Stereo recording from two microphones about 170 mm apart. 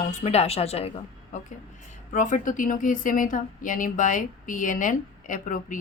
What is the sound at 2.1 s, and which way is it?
Speech, 50° left (ahead or behind).